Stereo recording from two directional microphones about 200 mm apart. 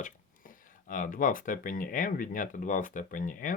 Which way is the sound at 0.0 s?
40° left (ahead or behind).